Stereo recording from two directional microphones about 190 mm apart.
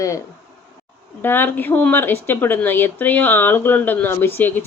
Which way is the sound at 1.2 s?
10° left (ahead or behind).